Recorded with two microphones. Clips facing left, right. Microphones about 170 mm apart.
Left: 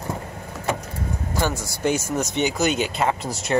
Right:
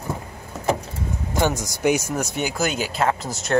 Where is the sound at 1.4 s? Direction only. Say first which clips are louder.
Right 3 dB; 20° right (ahead or behind).